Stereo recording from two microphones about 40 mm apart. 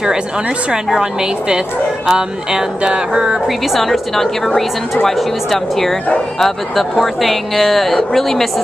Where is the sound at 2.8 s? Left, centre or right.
Right.